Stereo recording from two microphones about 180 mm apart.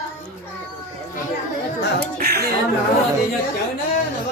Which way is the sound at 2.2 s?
60° right (ahead or behind).